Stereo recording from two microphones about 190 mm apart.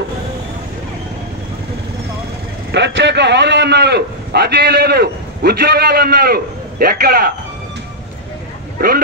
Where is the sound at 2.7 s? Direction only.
65° right (ahead or behind).